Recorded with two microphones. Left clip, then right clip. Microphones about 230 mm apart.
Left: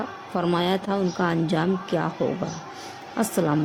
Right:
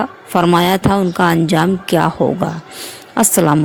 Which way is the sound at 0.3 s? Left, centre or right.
Right.